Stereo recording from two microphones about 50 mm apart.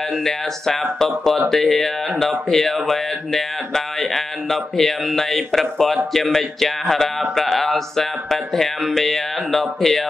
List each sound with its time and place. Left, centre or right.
0.9 s speech: centre